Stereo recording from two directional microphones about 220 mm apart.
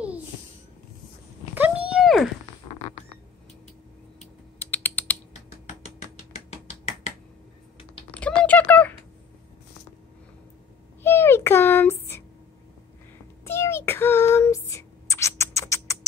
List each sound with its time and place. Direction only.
1.5 s a sound: 5° right (ahead or behind)
4.6 s typing: 10° left (ahead or behind)
6.9 s finger snapping: 30° left (ahead or behind)
8.1 s typing: 5° left (ahead or behind)
11.0 s a sound: 10° left (ahead or behind)
13.4 s child singing: 10° left (ahead or behind)